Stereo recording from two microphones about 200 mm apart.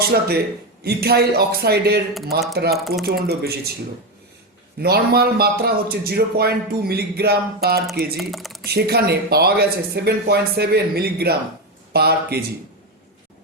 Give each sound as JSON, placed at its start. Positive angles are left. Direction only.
{"t": 0.0, "sound": "a man's voice", "side_deg": -50}
{"t": 2.7, "sound": "speech", "side_deg": 0}
{"t": 3.2, "sound": "a man's voice", "side_deg": -50}
{"t": 4.8, "sound": "a man's voice", "side_deg": -50}
{"t": 8.2, "sound": "speech", "side_deg": 0}
{"t": 8.6, "sound": "a man's voice", "side_deg": -55}